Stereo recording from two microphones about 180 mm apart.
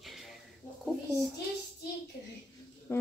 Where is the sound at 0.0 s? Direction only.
Centre (ahead or behind).